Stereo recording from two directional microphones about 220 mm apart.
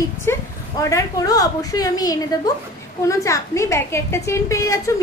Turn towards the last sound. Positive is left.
turn(degrees=15)  # may be behind; listen again after turning